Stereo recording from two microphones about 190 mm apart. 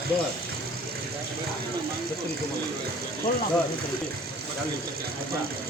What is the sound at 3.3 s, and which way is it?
Speech, 45° left (ahead or behind).